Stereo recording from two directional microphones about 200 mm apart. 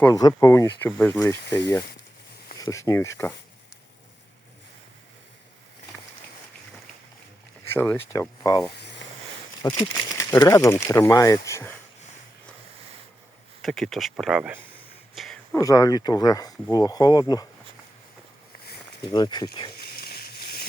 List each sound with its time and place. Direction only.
0.0 s speech: 15° left (ahead or behind)
7.7 s speech: 10° left (ahead or behind)
8.8 s a sound: 60° left (ahead or behind)
9.6 s speech: 20° left (ahead or behind)
13.6 s speech: centre (ahead or behind)
15.1 s a sound: centre (ahead or behind)
15.5 s speech: 15° left (ahead or behind)
19.0 s speech: 20° left (ahead or behind)
19.7 s a sound: 50° left (ahead or behind)